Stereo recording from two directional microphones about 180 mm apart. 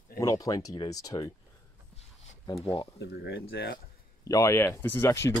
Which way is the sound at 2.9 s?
70° left (ahead or behind).